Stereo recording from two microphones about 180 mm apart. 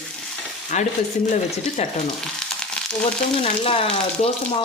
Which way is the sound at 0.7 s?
40° left (ahead or behind).